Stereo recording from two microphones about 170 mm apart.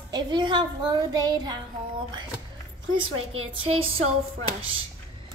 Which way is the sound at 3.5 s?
30° right (ahead or behind).